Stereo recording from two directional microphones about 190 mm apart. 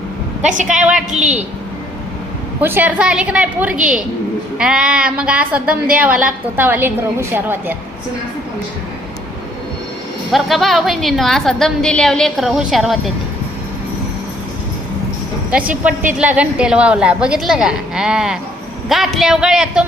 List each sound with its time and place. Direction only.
0.4 s a woman's voice: 40° right (ahead or behind)
0.8 s a woman's voice: 5° right (ahead or behind)
1.1 s a woman's voice: 35° right (ahead or behind)
2.6 s a woman's voice: 10° right (ahead or behind)
10.3 s a woman's voice: centre (ahead or behind)
15.4 s a woman's voice: 5° right (ahead or behind)